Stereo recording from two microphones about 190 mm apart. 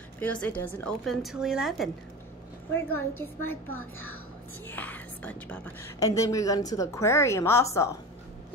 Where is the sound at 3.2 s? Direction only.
10° left (ahead or behind).